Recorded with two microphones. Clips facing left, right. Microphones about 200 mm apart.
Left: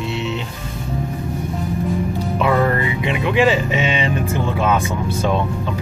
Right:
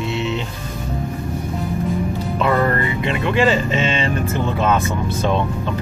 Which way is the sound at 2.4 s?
5° left (ahead or behind).